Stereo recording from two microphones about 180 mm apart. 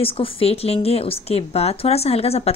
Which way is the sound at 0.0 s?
30° left (ahead or behind).